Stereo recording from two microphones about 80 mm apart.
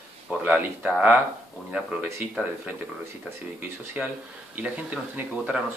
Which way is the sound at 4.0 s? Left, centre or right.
Centre.